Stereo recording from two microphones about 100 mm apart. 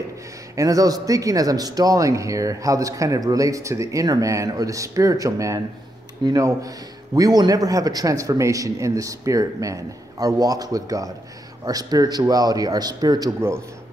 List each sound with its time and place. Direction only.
0.6 s a man's voice: 35° right (ahead or behind)